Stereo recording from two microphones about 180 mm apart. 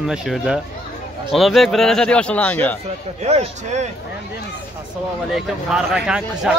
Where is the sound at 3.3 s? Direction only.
35° right (ahead or behind).